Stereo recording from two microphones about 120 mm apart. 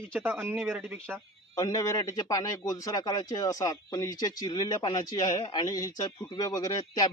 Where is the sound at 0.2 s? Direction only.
20° right (ahead or behind).